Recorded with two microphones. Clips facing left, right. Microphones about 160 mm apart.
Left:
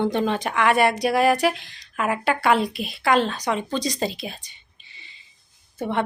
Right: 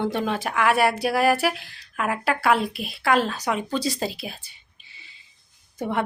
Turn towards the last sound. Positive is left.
turn(degrees=-10)  # may be behind; listen again after turning